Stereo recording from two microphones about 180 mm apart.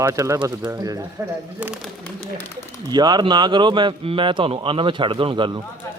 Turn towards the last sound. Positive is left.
turn(degrees=-25)  # may be behind; listen again after turning